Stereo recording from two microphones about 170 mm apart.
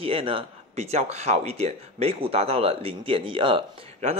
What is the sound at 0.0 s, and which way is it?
Speech, 35° right (ahead or behind).